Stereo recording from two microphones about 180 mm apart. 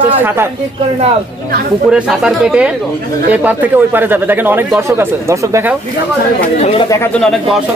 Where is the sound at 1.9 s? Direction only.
5° right (ahead or behind).